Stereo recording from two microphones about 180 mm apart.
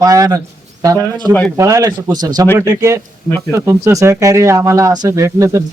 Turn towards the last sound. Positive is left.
turn(degrees=-15)  # may be behind; listen again after turning